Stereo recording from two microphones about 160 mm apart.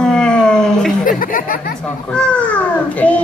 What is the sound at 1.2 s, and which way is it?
Speech, 60° left (ahead or behind).